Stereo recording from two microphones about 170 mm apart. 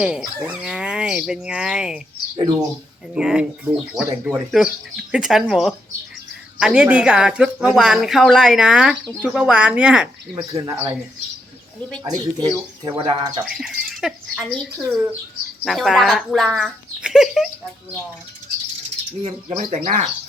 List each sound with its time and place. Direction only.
0.0 s speech: 5° right (ahead or behind)
2.3 s speech: 20° right (ahead or behind)
3.2 s speech: 5° right (ahead or behind)
10.5 s speech: 20° right (ahead or behind)
12.0 s speech: 25° right (ahead or behind)
13.4 s speech: 5° right (ahead or behind)
19.2 s speech: 45° right (ahead or behind)